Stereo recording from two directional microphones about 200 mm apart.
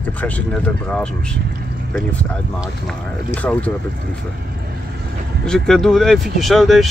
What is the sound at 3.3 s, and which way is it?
Speech, 10° left (ahead or behind).